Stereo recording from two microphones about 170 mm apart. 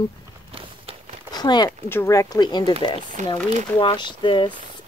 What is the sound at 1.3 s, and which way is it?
Speech, 25° left (ahead or behind).